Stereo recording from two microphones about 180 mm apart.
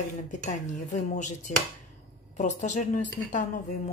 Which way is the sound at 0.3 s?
45° left (ahead or behind).